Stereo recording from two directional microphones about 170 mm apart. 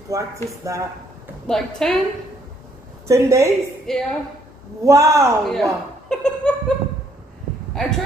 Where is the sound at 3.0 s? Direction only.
15° right (ahead or behind).